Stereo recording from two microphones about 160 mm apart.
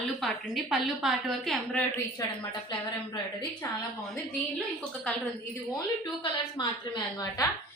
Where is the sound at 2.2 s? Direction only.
20° left (ahead or behind).